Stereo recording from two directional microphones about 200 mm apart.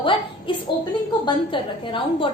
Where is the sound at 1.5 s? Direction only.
25° left (ahead or behind).